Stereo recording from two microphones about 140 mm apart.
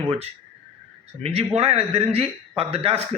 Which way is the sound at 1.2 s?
45° right (ahead or behind).